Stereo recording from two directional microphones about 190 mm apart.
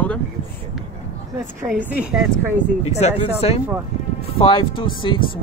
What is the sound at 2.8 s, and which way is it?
Speech, 35° left (ahead or behind).